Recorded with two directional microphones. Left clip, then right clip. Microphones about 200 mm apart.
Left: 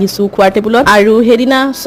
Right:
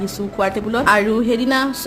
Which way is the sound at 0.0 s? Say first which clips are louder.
Left 11 dB; 35° left (ahead or behind).